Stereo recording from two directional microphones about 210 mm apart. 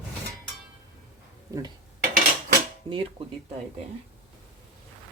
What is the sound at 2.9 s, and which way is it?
Speech, 20° right (ahead or behind).